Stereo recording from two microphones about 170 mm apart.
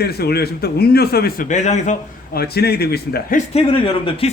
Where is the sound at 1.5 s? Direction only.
45° left (ahead or behind).